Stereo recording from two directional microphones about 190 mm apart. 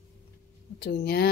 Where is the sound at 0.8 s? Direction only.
55° left (ahead or behind).